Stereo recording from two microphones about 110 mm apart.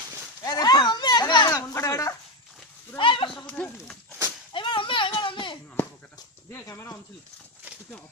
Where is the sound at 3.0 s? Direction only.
50° left (ahead or behind).